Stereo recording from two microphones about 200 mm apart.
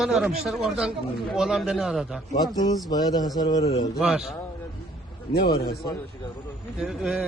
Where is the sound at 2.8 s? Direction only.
20° left (ahead or behind).